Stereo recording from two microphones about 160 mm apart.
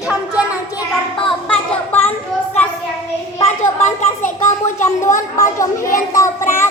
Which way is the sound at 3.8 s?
50° left (ahead or behind).